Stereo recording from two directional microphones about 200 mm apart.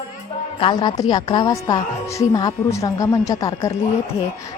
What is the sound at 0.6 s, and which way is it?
A woman's voice, 20° left (ahead or behind).